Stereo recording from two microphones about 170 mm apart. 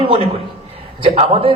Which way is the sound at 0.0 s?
35° right (ahead or behind).